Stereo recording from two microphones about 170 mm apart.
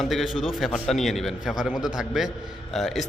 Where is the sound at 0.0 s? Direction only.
Centre (ahead or behind).